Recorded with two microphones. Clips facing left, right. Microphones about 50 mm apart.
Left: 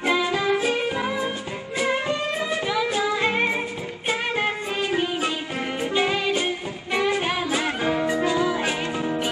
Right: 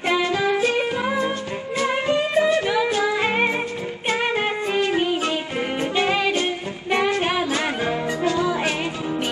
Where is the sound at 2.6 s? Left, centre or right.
Right.